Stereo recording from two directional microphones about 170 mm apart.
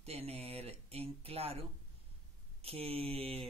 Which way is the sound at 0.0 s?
35° right (ahead or behind).